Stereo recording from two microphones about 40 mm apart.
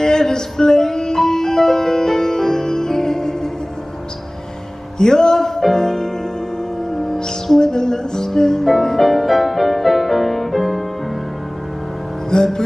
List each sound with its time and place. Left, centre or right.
0.0 s music: centre
4.9 s music: centre
12.3 s music: centre